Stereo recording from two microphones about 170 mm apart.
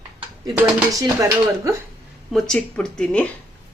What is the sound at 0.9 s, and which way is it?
Speech, 20° right (ahead or behind).